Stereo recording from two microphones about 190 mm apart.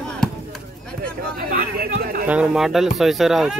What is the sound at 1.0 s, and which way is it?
Speech, 55° right (ahead or behind).